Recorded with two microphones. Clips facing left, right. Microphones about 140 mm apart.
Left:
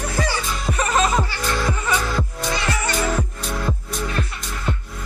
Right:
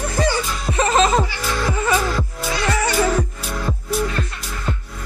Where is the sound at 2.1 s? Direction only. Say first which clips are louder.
Even; 5° right (ahead or behind).